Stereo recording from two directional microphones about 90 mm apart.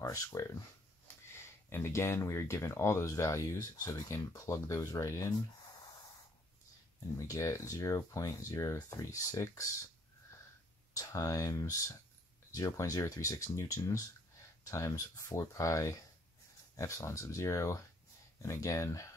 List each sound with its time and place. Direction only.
0.0 s speech: 35° left (ahead or behind)
7.2 s speech: 35° left (ahead or behind)
10.9 s speech: 40° left (ahead or behind)